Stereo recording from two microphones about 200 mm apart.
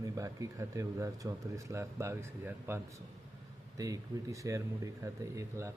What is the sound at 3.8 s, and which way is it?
Speech, 15° right (ahead or behind).